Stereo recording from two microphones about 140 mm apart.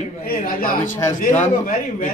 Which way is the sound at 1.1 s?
15° left (ahead or behind).